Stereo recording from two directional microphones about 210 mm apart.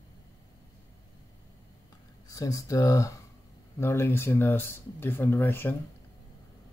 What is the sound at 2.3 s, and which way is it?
Speech, 15° left (ahead or behind).